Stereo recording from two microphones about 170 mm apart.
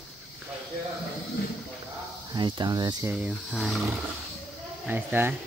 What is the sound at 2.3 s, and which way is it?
Speech, 30° right (ahead or behind).